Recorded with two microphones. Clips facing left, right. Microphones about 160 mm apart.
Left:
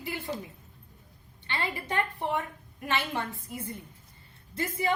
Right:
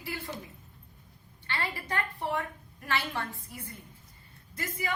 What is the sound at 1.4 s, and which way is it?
A woman's voice, 20° left (ahead or behind).